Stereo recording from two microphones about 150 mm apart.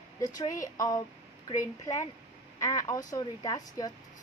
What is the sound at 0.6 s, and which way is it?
Speech, 25° left (ahead or behind).